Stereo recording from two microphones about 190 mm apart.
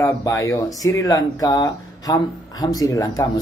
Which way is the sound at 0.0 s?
15° left (ahead or behind).